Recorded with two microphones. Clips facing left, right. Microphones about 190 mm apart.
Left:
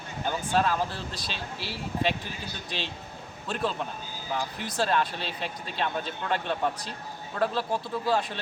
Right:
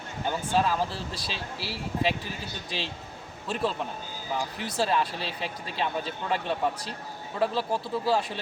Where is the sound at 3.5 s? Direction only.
5° right (ahead or behind).